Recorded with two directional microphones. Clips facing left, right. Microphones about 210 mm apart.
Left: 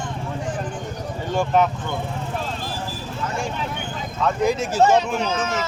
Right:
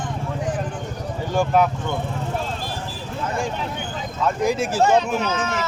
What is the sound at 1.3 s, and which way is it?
Speech, 10° right (ahead or behind).